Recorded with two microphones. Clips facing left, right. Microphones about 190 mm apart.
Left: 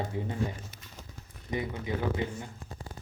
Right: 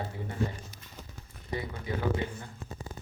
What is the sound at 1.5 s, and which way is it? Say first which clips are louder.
Speech: left 3 dB; 20° left (ahead or behind).